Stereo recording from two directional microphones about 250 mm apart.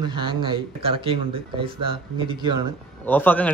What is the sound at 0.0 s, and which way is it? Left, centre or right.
Speech, centre.